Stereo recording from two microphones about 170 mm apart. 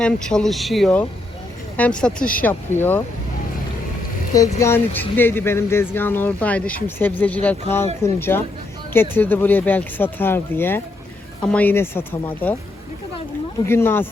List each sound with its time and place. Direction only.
0.0 s speech: 5° left (ahead or behind)
4.5 s speech: 15° left (ahead or behind)
13.7 s speech: 15° left (ahead or behind)